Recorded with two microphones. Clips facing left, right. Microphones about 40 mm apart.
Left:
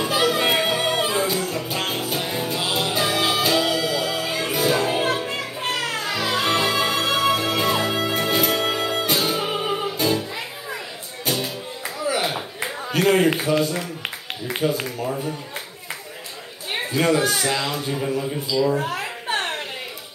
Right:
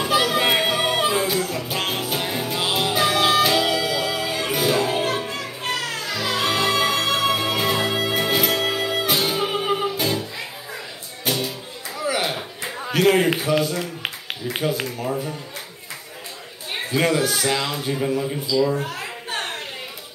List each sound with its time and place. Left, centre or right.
0.0 s music: centre
5.6 s music: left
6.4 s music: centre
8.5 s music: centre
12.1 s a sound: centre
14.7 s speech: centre
17.0 s speech: centre
17.5 s speech: centre
18.5 s speech: left
18.9 s a sound: left